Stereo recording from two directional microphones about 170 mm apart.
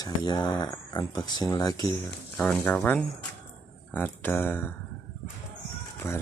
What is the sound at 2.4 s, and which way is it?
Speech, 10° left (ahead or behind).